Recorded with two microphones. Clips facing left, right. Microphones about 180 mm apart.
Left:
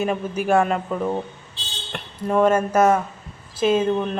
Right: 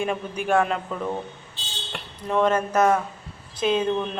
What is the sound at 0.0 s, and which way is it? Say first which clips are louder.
Speech: left 4 dB; 5° left (ahead or behind).